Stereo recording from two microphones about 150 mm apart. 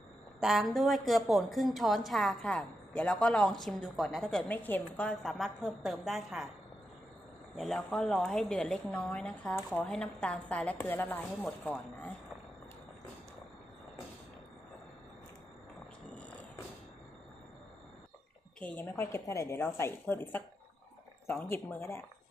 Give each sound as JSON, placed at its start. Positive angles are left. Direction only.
{"t": 0.4, "sound": "a woman's voice", "side_deg": 0}
{"t": 7.5, "sound": "a woman's voice", "side_deg": 0}
{"t": 18.8, "sound": "a woman's voice", "side_deg": 15}